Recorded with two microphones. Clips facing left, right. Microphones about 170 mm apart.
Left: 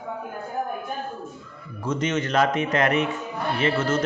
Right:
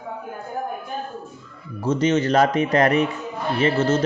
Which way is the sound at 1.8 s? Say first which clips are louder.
Right 6 dB; 30° right (ahead or behind).